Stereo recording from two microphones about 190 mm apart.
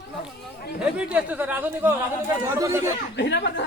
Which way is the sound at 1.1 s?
5° right (ahead or behind).